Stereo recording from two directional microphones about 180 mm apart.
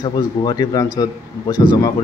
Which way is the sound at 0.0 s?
25° left (ahead or behind).